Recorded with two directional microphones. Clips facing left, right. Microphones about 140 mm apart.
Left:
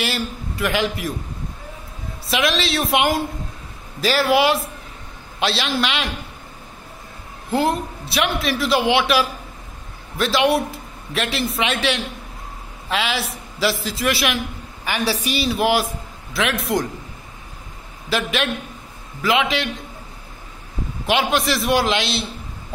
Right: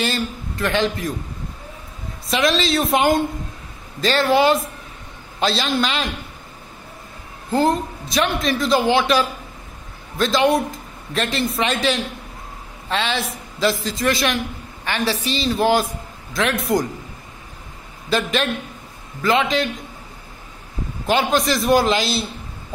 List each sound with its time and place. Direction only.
0.0 s a man's voice: 10° left (ahead or behind)
2.2 s a man's voice: centre (ahead or behind)
7.5 s a man's voice: 5° left (ahead or behind)
18.1 s a man's voice: 5° left (ahead or behind)
21.1 s a man's voice: centre (ahead or behind)